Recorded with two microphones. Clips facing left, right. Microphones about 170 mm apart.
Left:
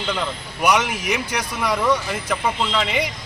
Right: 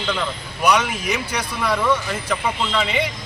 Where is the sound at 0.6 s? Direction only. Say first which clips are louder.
Right 1 dB; 15° left (ahead or behind).